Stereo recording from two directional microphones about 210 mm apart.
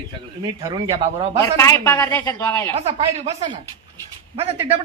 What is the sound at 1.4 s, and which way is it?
A man's voice, 15° left (ahead or behind).